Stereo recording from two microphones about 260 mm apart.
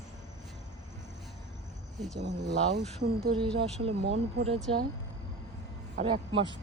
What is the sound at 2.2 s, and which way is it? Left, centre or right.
Speech, right.